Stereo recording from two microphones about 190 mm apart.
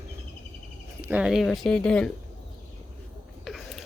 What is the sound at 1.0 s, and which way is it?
Speech, 5° right (ahead or behind).